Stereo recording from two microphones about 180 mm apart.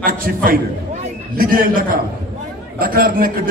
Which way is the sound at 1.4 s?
50° right (ahead or behind).